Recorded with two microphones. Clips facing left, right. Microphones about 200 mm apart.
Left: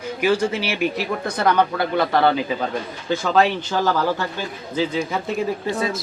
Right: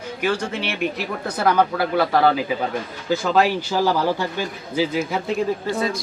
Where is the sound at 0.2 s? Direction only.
5° left (ahead or behind).